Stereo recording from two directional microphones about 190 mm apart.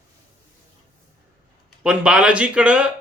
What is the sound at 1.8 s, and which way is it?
Speech, 5° right (ahead or behind).